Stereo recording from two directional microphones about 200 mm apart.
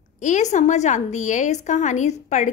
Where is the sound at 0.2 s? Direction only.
40° left (ahead or behind).